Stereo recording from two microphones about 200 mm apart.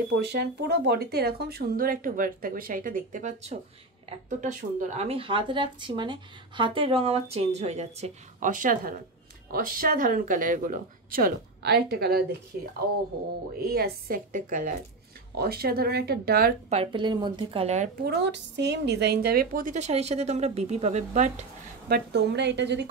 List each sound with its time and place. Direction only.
0.2 s speech: 55° right (ahead or behind)
13.6 s speech: 50° right (ahead or behind)
16.6 s speech: 30° right (ahead or behind)
18.0 s speech: 55° right (ahead or behind); by 21.5 s 35° right (ahead or behind)
21.8 s a woman's voice: 55° right (ahead or behind)